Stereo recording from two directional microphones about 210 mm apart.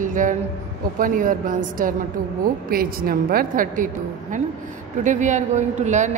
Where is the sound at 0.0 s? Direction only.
35° right (ahead or behind).